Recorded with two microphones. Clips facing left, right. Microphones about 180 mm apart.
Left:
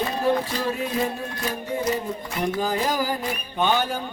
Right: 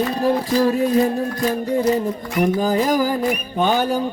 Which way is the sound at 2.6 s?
45° right (ahead or behind).